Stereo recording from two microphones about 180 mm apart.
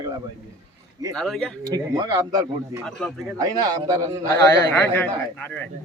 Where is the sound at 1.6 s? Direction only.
20° right (ahead or behind).